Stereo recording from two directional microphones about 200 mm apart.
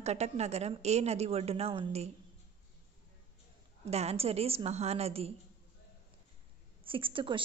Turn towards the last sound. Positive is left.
turn(degrees=-25)  # may be behind; listen again after turning